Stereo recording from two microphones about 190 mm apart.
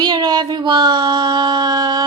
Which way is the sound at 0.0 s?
20° right (ahead or behind).